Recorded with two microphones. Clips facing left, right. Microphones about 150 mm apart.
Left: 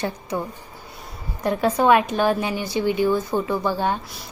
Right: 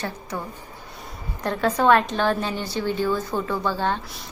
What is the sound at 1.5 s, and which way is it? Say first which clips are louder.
A woman's voice: left 1 dB; 10° left (ahead or behind).